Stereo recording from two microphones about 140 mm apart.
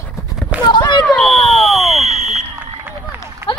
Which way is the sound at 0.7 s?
30° left (ahead or behind).